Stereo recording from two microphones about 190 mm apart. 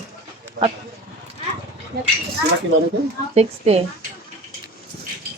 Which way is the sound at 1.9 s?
55° right (ahead or behind).